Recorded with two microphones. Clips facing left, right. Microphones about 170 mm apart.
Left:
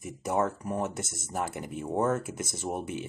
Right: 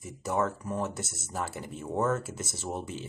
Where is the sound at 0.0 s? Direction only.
20° left (ahead or behind).